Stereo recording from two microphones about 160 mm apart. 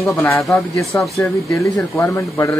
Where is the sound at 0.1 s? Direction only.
15° left (ahead or behind).